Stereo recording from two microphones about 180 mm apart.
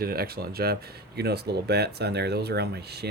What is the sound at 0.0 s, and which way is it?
Speech, 60° right (ahead or behind).